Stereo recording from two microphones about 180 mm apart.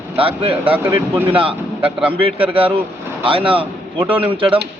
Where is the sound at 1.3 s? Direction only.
30° right (ahead or behind).